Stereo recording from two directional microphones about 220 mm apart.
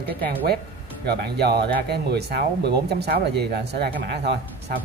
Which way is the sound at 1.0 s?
45° right (ahead or behind).